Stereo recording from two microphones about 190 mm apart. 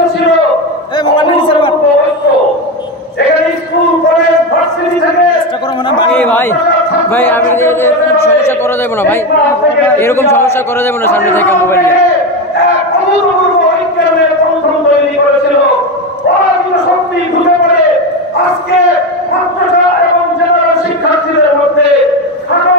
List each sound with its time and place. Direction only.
1.1 s a sound: 25° left (ahead or behind)
6.1 s chatter: 10° left (ahead or behind)
7.2 s speech: 10° left (ahead or behind)
9.9 s a man's voice: 15° left (ahead or behind)